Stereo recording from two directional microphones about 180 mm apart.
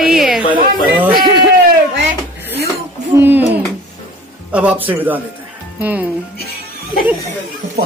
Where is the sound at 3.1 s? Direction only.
10° right (ahead or behind).